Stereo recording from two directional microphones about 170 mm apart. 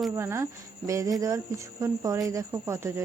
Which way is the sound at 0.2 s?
15° right (ahead or behind).